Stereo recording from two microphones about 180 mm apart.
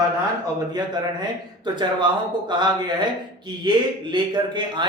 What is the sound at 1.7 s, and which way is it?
Speech, 25° right (ahead or behind).